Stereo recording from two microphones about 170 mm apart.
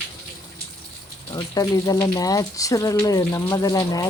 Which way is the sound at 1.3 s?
20° left (ahead or behind).